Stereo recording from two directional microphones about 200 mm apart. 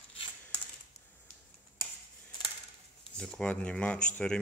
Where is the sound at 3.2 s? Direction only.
5° left (ahead or behind).